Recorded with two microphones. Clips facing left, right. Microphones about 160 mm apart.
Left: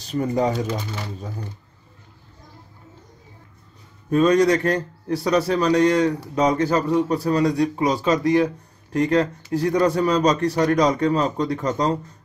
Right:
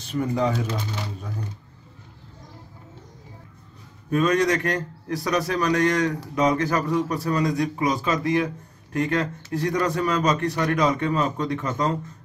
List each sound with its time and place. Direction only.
0.1 s a man's voice: 35° left (ahead or behind)
4.1 s a man's voice: 30° left (ahead or behind)